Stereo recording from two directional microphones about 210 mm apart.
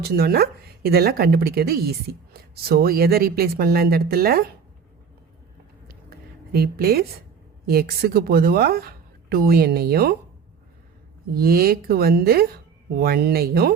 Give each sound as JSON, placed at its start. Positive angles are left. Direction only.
{"t": 0.0, "sound": "speech", "side_deg": -45}
{"t": 6.1, "sound": "a sound", "side_deg": -45}
{"t": 7.7, "sound": "speech", "side_deg": -45}
{"t": 11.3, "sound": "speech", "side_deg": -45}